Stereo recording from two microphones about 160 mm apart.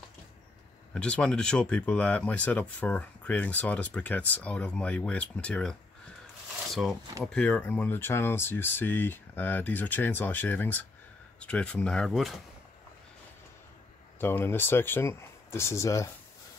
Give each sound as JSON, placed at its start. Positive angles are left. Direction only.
{"t": 0.9, "sound": "speech", "side_deg": 5}
{"t": 14.2, "sound": "speech", "side_deg": 15}